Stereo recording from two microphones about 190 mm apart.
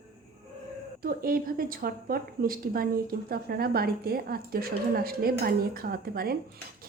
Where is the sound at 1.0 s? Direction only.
50° right (ahead or behind).